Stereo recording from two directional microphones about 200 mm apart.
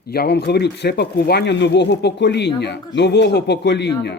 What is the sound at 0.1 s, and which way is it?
Speech, 55° left (ahead or behind).